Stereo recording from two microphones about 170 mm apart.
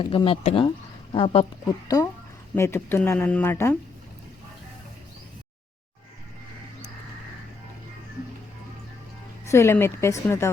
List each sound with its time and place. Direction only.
0.0 s speech: 30° left (ahead or behind); by 3.8 s 15° left (ahead or behind)
9.5 s speech: 15° left (ahead or behind)